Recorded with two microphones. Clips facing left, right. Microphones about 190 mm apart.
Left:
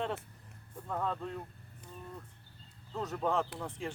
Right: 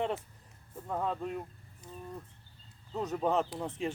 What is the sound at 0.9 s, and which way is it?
Speech, 15° right (ahead or behind).